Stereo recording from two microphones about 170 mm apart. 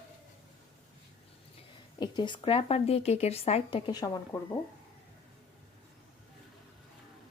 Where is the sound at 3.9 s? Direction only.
25° left (ahead or behind).